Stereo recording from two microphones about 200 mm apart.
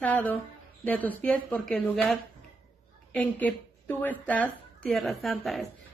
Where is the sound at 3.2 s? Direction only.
10° left (ahead or behind).